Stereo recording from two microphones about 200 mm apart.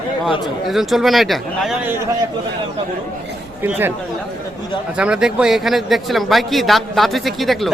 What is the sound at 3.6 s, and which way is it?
Speech, 10° right (ahead or behind).